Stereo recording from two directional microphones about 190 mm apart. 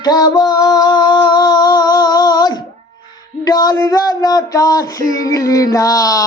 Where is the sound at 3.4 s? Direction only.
20° left (ahead or behind).